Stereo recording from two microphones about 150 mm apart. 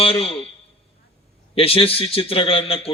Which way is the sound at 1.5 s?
40° left (ahead or behind).